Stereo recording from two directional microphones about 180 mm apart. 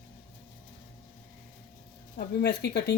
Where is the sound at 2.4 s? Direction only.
65° left (ahead or behind).